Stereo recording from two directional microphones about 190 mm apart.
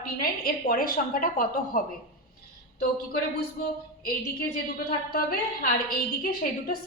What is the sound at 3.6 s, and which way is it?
A woman's voice, 50° left (ahead or behind).